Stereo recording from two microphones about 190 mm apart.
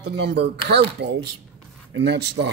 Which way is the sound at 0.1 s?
60° right (ahead or behind).